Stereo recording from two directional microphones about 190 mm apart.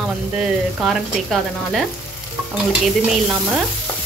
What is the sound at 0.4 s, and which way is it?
Frying, centre (ahead or behind).